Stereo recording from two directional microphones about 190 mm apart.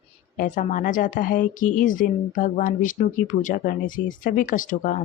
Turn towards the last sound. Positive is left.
turn(degrees=45)  # may be behind; listen again after turning